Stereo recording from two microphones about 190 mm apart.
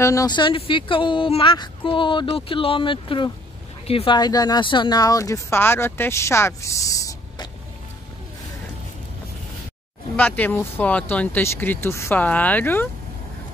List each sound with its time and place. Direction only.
0.0 s speech: 15° left (ahead or behind)
10.1 s speech: 10° left (ahead or behind)